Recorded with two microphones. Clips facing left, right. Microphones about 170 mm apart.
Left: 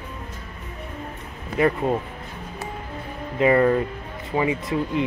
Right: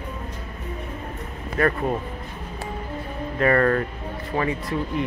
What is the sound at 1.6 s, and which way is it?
Speech, 15° left (ahead or behind).